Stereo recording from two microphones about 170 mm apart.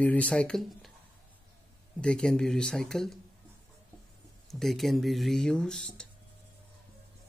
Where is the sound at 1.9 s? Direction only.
5° left (ahead or behind).